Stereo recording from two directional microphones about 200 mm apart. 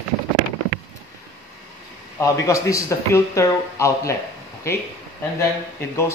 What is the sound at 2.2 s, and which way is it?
Speech, 15° left (ahead or behind).